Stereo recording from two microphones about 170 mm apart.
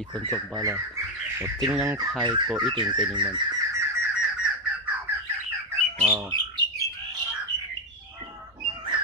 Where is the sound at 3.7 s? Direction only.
10° right (ahead or behind).